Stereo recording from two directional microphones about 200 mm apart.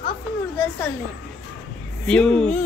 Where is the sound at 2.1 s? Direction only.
5° left (ahead or behind).